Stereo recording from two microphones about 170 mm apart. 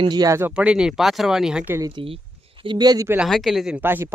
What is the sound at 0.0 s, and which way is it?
Speech, 25° right (ahead or behind).